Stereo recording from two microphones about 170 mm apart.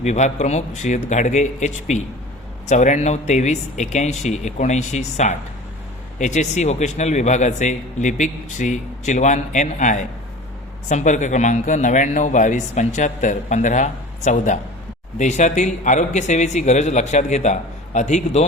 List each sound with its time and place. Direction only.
0.0 s a man's voice: 40° left (ahead or behind)